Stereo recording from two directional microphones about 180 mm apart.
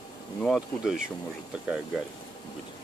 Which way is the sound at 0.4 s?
Centre (ahead or behind).